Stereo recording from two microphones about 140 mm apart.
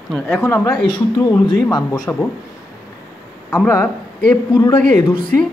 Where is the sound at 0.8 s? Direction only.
30° left (ahead or behind).